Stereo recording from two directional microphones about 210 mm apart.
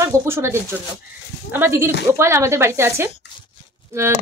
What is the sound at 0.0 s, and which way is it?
Speech, 10° right (ahead or behind).